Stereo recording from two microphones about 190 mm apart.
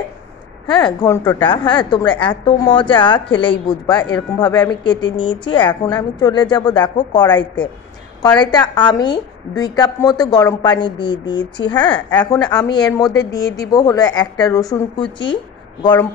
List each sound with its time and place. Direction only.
0.7 s a woman's voice: 25° left (ahead or behind)